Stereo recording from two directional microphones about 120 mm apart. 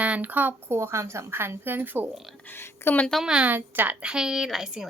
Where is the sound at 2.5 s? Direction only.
20° left (ahead or behind).